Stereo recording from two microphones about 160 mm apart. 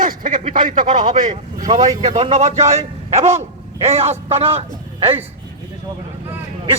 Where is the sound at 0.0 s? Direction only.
55° right (ahead or behind); by 5.2 s 40° right (ahead or behind).